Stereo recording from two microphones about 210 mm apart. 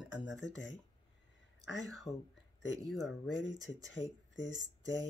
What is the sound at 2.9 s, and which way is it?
Speech, centre (ahead or behind).